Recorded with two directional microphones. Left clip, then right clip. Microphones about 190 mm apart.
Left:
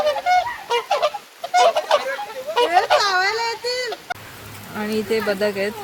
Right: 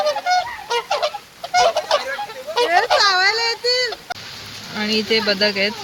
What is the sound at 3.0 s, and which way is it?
Whimper, 30° right (ahead or behind).